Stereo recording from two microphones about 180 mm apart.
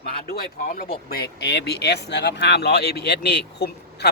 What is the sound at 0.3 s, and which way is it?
Speech, 55° left (ahead or behind).